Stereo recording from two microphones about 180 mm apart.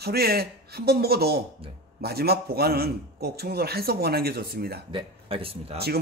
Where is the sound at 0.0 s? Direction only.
60° right (ahead or behind).